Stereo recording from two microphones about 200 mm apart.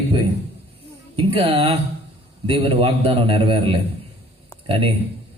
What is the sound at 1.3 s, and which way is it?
A man's voice, 30° right (ahead or behind).